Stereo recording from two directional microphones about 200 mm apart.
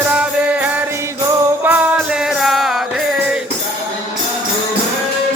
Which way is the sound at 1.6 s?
10° right (ahead or behind).